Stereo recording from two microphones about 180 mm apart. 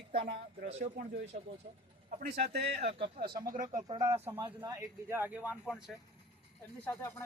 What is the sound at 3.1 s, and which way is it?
Speech, 60° right (ahead or behind).